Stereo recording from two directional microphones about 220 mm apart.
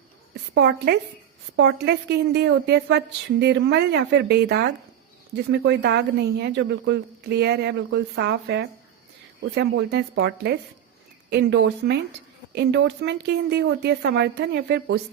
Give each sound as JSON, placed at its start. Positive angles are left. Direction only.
{"t": 0.5, "sound": "speech", "side_deg": -50}